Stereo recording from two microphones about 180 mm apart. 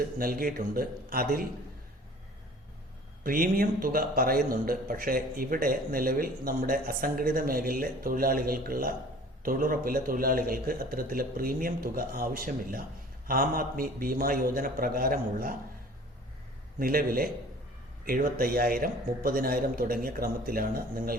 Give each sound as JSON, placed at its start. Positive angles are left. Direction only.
{"t": 0.2, "sound": "a man's voice", "side_deg": -55}
{"t": 3.2, "sound": "a man's voice", "side_deg": -50}
{"t": 16.8, "sound": "a man's voice", "side_deg": -55}